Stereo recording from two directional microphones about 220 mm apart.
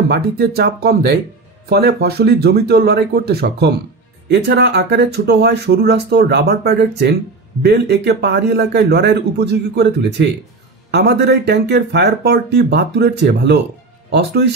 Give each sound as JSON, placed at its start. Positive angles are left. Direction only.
{"t": 0.1, "sound": "speech", "side_deg": -45}